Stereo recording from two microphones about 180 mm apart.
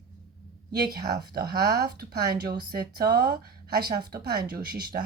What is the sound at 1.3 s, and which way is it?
Speech, 60° right (ahead or behind).